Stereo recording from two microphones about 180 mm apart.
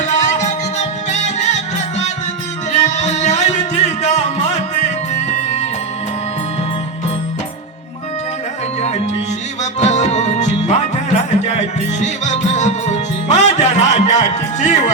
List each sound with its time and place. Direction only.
0.0 s music: 40° left (ahead or behind)
9.8 s music: 40° left (ahead or behind)